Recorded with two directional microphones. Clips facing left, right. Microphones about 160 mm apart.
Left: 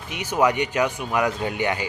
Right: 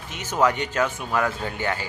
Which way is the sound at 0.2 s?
10° left (ahead or behind).